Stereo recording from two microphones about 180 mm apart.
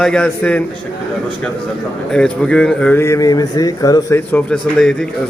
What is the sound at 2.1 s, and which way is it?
Speech, 5° left (ahead or behind).